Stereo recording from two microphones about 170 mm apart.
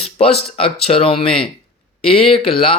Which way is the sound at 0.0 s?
35° left (ahead or behind).